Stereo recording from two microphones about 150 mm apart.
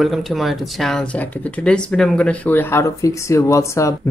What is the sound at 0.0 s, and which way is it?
Speech, centre (ahead or behind).